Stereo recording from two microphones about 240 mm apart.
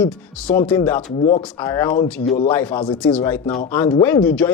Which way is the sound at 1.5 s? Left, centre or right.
Centre.